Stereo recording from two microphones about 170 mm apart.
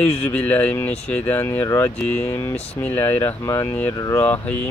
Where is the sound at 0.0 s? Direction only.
5° left (ahead or behind).